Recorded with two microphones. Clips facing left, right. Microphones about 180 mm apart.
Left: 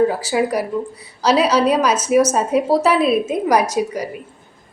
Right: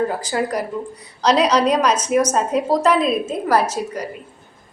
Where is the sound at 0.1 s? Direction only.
5° left (ahead or behind).